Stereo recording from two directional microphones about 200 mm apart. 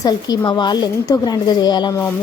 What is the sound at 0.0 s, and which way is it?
Speech, 20° left (ahead or behind).